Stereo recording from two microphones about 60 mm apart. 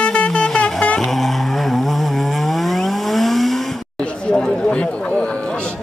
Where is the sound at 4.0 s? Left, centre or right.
Centre.